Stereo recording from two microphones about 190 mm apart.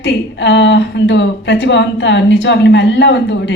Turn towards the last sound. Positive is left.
turn(degrees=70)  # may be behind; listen again after turning